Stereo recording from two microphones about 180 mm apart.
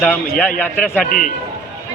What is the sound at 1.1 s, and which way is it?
Speech, 50° left (ahead or behind).